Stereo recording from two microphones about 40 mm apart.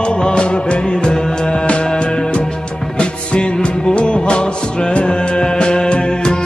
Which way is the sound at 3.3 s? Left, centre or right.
Left.